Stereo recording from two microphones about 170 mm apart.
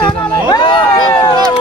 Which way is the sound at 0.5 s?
25° left (ahead or behind).